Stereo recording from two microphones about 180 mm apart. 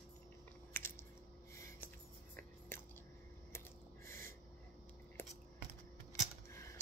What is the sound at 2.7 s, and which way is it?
Biting, 10° left (ahead or behind).